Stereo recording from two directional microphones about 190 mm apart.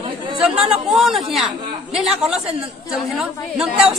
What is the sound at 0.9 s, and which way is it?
Speech, centre (ahead or behind).